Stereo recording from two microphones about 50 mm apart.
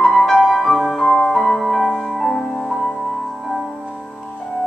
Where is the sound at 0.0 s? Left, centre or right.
Centre.